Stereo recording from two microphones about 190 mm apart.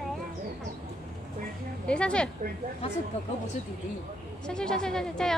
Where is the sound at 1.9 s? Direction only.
5° left (ahead or behind).